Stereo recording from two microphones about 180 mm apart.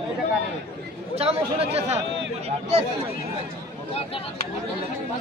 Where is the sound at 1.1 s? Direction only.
35° right (ahead or behind).